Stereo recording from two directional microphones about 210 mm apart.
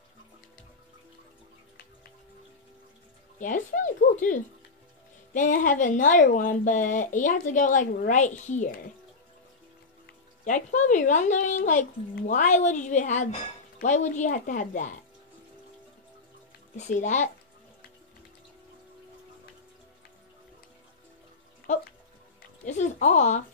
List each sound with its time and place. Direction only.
3.3 s speech: 40° left (ahead or behind)
10.0 s speech: 35° left (ahead or behind)
16.7 s speech: 35° left (ahead or behind)
22.7 s speech: 35° left (ahead or behind)